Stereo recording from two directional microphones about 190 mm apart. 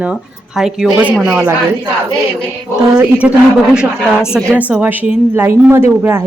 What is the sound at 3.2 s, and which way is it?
Speech, 5° right (ahead or behind).